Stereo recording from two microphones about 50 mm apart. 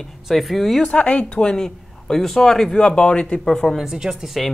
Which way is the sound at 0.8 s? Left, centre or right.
Left.